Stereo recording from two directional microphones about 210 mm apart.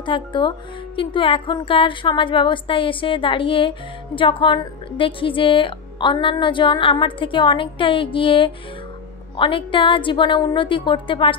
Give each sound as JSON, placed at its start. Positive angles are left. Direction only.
{"t": 0.0, "sound": "speech", "side_deg": 25}